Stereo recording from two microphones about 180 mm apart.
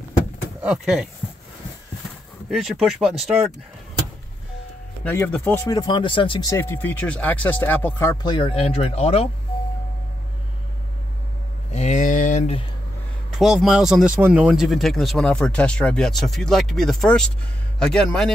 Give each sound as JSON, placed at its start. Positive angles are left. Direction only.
{"t": 0.6, "sound": "speech", "side_deg": -5}
{"t": 2.5, "sound": "speech", "side_deg": 0}
{"t": 5.0, "sound": "speech", "side_deg": 10}
{"t": 11.7, "sound": "a sound", "side_deg": 40}
{"t": 13.3, "sound": "speech", "side_deg": 0}